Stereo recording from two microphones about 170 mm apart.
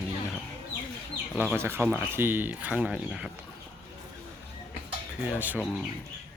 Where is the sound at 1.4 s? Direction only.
10° right (ahead or behind).